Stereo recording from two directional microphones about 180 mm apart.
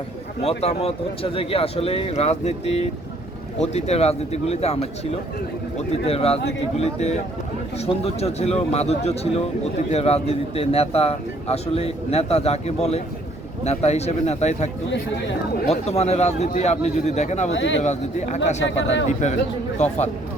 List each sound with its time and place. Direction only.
0.4 s speech: 35° left (ahead or behind)
17.5 s speech: 90° left
17.8 s speech: 40° left (ahead or behind)
18.6 s speech: 90° left
19.0 s speech: 40° left (ahead or behind)